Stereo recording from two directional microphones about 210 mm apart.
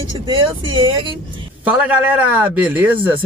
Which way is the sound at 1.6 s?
5° right (ahead or behind).